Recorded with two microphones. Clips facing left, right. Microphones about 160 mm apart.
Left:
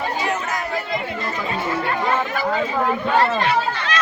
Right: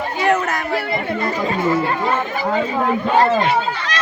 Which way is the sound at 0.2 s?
65° right (ahead or behind).